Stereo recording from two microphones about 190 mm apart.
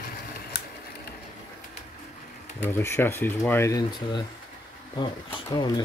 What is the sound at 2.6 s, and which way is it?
Speech, 10° left (ahead or behind).